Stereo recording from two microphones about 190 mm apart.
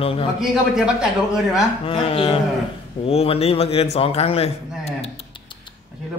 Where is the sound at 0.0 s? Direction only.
30° left (ahead or behind).